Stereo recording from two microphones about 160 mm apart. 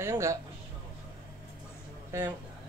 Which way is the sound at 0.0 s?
15° right (ahead or behind).